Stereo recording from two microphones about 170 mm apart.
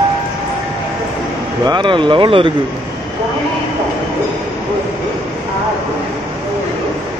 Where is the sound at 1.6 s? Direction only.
25° right (ahead or behind).